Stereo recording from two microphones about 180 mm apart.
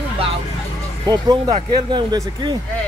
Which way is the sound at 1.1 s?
20° right (ahead or behind).